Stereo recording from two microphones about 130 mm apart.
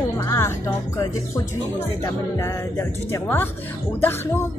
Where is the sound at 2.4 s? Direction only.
20° left (ahead or behind).